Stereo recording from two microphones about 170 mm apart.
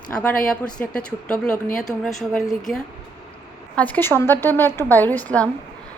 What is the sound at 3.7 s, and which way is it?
Speech, 10° left (ahead or behind).